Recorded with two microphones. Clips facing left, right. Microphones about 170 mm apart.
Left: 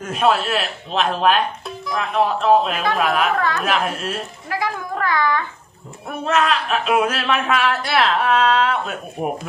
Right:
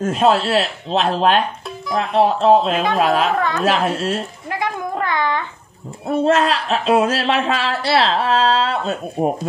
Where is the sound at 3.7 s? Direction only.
30° right (ahead or behind).